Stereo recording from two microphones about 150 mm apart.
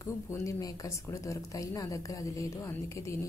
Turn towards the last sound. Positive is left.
turn(degrees=20)  # may be behind; listen again after turning